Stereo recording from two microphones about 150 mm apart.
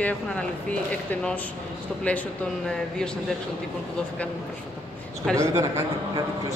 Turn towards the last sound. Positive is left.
turn(degrees=-20)  # may be behind; listen again after turning